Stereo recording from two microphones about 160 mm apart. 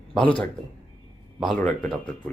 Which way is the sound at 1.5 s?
5° left (ahead or behind).